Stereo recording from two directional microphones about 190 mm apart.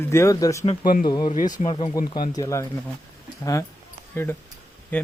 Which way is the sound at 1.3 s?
45° left (ahead or behind).